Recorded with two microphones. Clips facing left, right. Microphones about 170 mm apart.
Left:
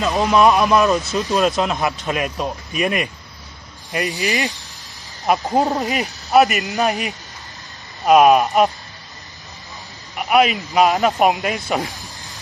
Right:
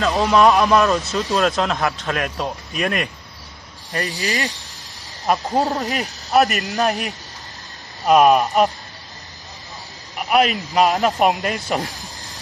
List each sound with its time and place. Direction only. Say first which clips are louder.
0.0 s a man's voice: even; centre (ahead or behind)
5.6 s speech: left 2 dB; 20° left (ahead or behind)
5.9 s speech: left 2 dB; centre (ahead or behind)
10.1 s speech: left 2 dB; 5° left (ahead or behind)